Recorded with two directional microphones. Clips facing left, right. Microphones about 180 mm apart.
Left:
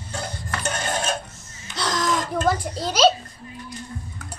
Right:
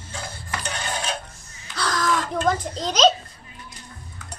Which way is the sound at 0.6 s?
45° left (ahead or behind).